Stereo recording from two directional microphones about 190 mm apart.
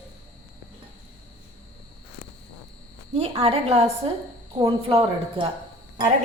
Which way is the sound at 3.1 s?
35° right (ahead or behind).